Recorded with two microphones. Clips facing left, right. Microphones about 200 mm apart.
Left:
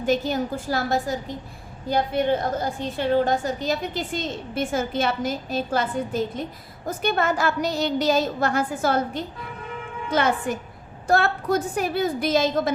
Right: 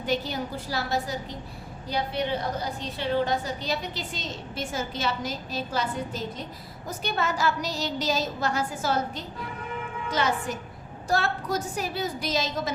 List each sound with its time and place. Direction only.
0.0 s a woman's voice: 45° left (ahead or behind)